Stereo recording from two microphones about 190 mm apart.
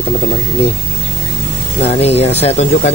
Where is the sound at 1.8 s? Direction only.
35° left (ahead or behind).